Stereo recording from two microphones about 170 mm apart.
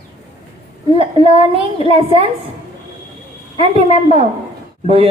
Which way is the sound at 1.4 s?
35° left (ahead or behind).